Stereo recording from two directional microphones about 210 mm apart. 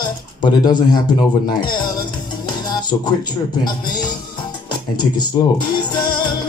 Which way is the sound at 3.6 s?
20° left (ahead or behind).